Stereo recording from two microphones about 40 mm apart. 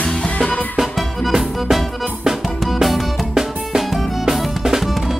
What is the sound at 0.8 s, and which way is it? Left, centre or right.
Music, centre.